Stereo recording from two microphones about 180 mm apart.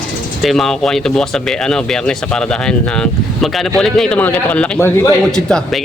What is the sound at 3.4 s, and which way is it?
A man's voice, centre (ahead or behind).